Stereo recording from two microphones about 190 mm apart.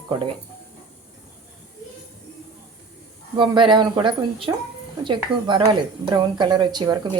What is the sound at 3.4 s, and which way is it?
Speech, 25° right (ahead or behind).